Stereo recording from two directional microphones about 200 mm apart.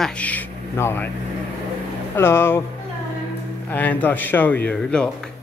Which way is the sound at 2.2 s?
10° left (ahead or behind).